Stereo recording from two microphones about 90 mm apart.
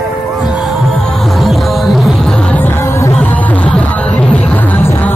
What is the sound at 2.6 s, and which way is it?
Music, 25° left (ahead or behind).